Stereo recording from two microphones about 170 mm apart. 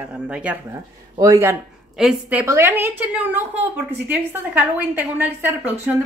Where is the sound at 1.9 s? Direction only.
5° right (ahead or behind).